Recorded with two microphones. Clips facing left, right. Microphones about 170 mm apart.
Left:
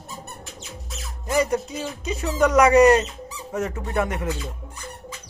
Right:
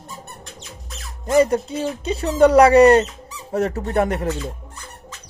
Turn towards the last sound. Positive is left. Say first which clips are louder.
# right 5 dB
turn(degrees=-35)  # may be behind; listen again after turning